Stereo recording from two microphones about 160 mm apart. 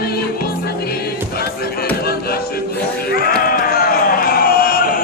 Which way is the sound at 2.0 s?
75° left (ahead or behind).